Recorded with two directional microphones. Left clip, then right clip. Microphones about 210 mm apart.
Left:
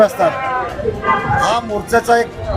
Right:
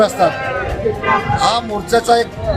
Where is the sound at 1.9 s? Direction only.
10° left (ahead or behind).